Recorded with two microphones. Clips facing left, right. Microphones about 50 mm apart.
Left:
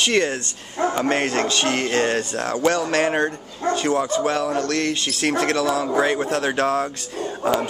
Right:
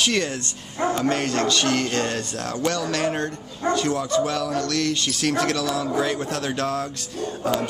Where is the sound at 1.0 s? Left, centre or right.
Left.